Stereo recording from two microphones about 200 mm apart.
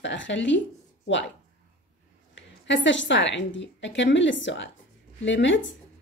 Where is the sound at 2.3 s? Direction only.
65° left (ahead or behind).